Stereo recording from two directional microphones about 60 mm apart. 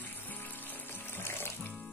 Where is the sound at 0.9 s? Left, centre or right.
Left.